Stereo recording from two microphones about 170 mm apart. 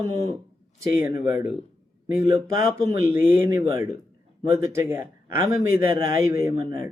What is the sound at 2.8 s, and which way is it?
Speech, 15° right (ahead or behind).